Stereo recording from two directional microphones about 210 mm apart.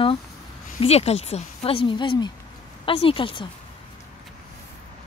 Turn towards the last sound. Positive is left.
turn(degrees=25)  # may be behind; listen again after turning